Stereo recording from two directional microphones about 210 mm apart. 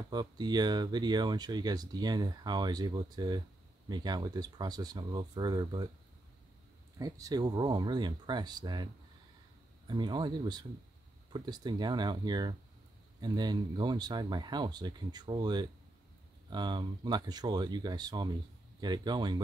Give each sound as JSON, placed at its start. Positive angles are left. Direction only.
{"t": 0.1, "sound": "speech", "side_deg": -20}
{"t": 7.0, "sound": "speech", "side_deg": -15}
{"t": 9.8, "sound": "speech", "side_deg": -20}